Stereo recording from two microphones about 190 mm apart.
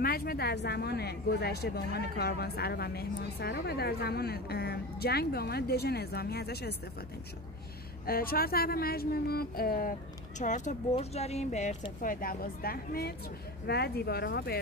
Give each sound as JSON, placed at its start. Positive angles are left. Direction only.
{"t": 0.0, "sound": "a woman's voice", "side_deg": 50}
{"t": 8.1, "sound": "speech", "side_deg": 50}
{"t": 10.4, "sound": "a woman's voice", "side_deg": 40}